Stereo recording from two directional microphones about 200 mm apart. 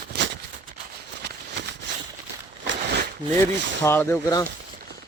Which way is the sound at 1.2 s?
55° right (ahead or behind).